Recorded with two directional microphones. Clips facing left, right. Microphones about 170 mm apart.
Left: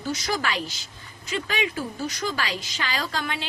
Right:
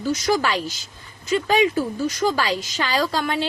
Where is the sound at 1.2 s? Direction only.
40° right (ahead or behind).